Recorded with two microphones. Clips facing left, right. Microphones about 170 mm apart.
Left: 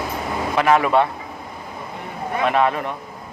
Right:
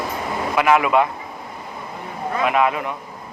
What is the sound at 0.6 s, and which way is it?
Speech, 35° left (ahead or behind).